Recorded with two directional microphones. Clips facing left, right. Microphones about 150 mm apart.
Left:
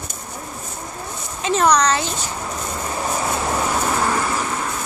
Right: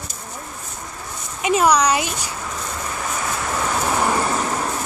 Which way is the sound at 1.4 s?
10° right (ahead or behind).